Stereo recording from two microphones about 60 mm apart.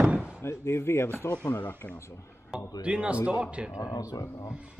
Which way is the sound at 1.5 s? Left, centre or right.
Left.